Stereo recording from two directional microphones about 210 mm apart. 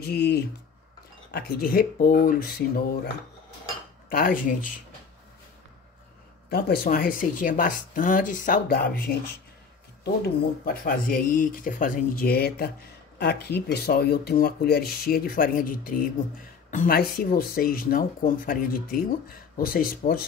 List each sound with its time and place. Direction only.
0.0 s speech: 50° left (ahead or behind)
4.1 s speech: 40° left (ahead or behind)
6.5 s speech: 45° left (ahead or behind)